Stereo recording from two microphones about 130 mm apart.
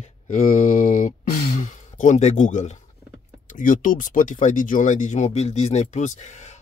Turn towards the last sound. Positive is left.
turn(degrees=65)  # may be behind; listen again after turning